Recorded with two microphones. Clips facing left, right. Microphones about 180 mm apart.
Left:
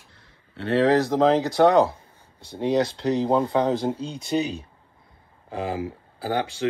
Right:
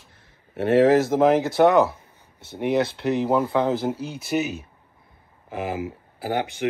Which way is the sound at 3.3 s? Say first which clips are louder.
Even; 25° left (ahead or behind).